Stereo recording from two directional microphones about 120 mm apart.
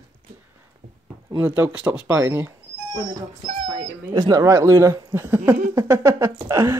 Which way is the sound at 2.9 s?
35° right (ahead or behind).